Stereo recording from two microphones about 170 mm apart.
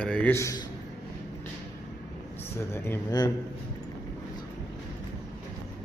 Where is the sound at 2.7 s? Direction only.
15° left (ahead or behind).